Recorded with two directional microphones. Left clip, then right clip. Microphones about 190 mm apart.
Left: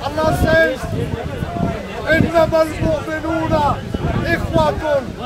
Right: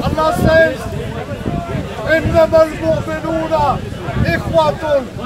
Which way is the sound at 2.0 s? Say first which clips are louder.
Right 2 dB; 15° left (ahead or behind).